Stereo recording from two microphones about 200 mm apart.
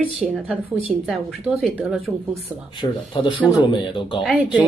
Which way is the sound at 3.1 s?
25° left (ahead or behind).